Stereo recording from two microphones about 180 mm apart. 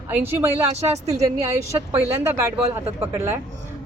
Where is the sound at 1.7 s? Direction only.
15° right (ahead or behind).